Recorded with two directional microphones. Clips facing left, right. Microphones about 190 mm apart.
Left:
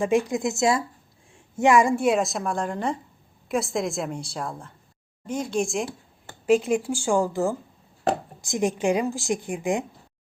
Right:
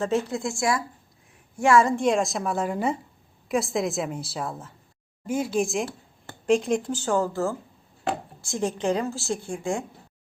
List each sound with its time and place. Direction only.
0.0 s a woman's voice: 15° left (ahead or behind)